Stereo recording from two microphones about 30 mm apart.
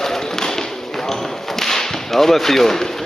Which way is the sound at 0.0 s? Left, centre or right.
Centre.